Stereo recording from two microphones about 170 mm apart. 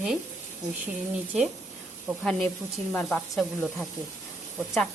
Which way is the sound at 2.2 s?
5° left (ahead or behind).